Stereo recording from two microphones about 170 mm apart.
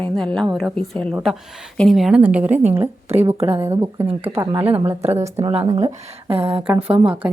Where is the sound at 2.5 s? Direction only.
40° right (ahead or behind).